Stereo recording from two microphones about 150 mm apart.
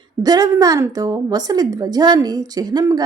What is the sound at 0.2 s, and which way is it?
A woman's voice, 25° right (ahead or behind).